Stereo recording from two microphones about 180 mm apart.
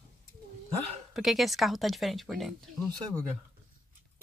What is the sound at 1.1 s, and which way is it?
Speech, centre (ahead or behind).